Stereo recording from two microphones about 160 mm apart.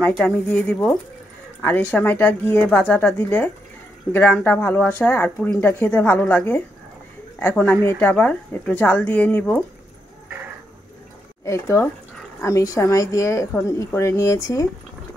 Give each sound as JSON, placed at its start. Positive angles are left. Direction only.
{"t": 0.0, "sound": "speech", "side_deg": 5}
{"t": 11.4, "sound": "a woman's voice", "side_deg": 20}